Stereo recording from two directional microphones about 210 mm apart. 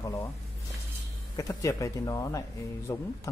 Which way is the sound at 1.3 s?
15° left (ahead or behind).